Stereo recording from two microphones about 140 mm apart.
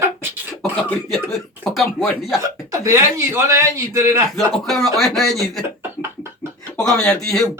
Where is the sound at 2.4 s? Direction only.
20° right (ahead or behind).